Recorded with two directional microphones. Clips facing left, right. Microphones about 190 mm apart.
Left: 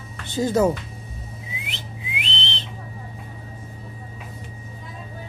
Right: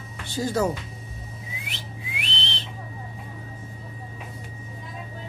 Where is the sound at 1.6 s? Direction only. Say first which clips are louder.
Left 2 dB; 20° left (ahead or behind).